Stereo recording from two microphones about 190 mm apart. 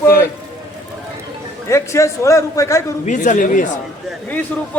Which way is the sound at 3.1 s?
40° left (ahead or behind).